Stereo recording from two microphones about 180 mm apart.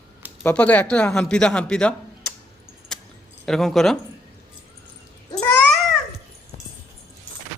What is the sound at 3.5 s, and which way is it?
Speech, centre (ahead or behind).